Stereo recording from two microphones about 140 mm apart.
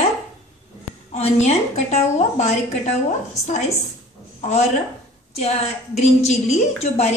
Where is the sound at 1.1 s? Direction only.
50° left (ahead or behind).